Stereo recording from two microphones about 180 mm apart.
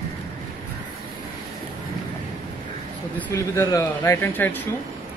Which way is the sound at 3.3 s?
15° left (ahead or behind).